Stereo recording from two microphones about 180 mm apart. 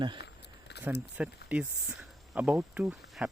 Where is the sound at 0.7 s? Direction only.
65° left (ahead or behind).